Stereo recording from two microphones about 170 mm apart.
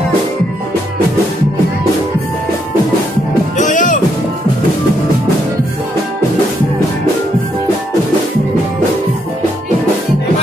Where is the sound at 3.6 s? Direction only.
50° left (ahead or behind).